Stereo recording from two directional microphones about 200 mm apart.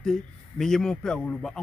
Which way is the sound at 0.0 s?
Centre (ahead or behind).